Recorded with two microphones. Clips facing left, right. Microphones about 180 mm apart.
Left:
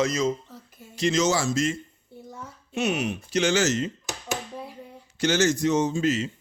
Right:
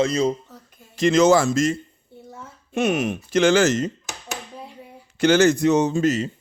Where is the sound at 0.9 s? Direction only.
55° right (ahead or behind).